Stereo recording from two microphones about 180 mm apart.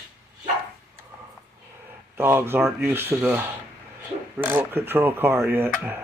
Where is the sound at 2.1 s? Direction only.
10° right (ahead or behind).